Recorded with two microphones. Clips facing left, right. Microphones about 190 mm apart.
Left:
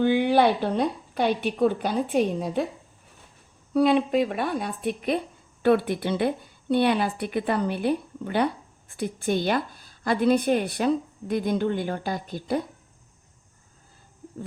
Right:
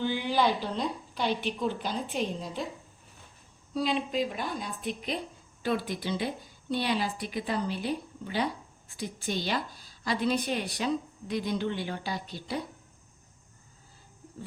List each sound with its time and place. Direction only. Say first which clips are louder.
0.0 s speech: left 8 dB; 60° left (ahead or behind)
3.8 s a woman's voice: left 9 dB; 60° left (ahead or behind)